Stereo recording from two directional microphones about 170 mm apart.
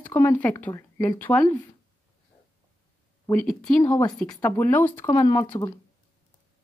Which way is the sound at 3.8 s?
20° left (ahead or behind).